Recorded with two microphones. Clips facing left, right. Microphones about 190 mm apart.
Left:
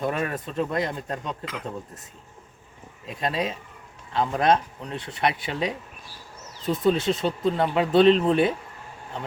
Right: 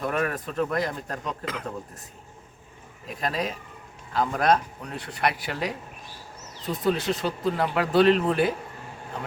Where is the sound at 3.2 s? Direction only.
25° left (ahead or behind).